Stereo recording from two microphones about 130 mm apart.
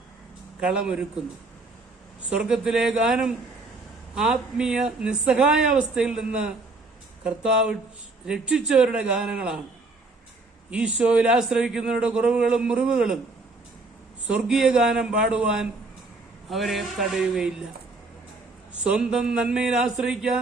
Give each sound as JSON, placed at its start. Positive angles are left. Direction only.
{"t": 0.6, "sound": "a man's voice", "side_deg": -5}
{"t": 2.3, "sound": "a man's voice", "side_deg": -5}
{"t": 10.7, "sound": "a man's voice", "side_deg": -5}
{"t": 14.3, "sound": "a man's voice", "side_deg": -5}
{"t": 18.8, "sound": "a man's voice", "side_deg": -5}